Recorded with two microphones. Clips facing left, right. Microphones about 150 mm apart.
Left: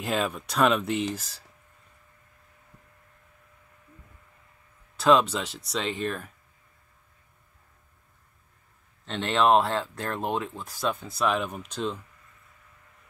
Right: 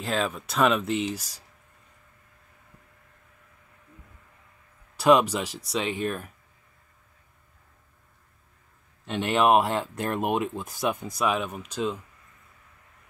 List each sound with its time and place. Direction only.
0.0 s speech: centre (ahead or behind)
4.9 s speech: 10° right (ahead or behind)
9.0 s speech: 10° right (ahead or behind)
11.2 s speech: 5° right (ahead or behind)